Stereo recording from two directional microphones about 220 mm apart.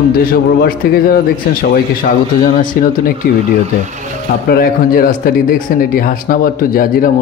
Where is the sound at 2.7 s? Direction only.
40° left (ahead or behind).